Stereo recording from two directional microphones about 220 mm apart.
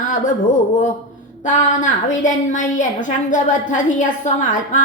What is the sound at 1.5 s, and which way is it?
A woman's voice, 35° left (ahead or behind).